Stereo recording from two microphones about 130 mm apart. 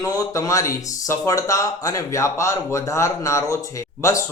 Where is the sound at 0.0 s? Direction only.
25° left (ahead or behind).